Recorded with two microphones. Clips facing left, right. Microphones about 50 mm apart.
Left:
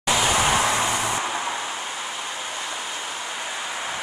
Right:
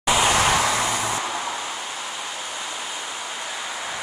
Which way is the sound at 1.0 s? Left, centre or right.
Centre.